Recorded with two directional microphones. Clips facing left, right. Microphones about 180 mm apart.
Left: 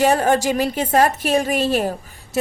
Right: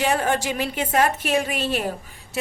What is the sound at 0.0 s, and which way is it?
Speech, 40° left (ahead or behind).